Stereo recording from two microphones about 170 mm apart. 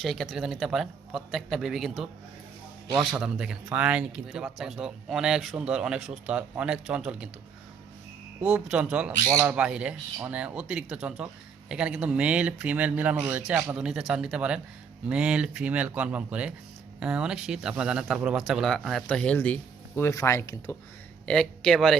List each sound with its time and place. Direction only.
0.0 s speech: centre (ahead or behind)
8.5 s speech: 5° right (ahead or behind); by 20.7 s 15° left (ahead or behind)
21.2 s speech: 5° left (ahead or behind)